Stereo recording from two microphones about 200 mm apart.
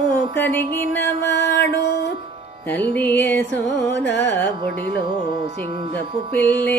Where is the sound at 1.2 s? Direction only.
55° left (ahead or behind).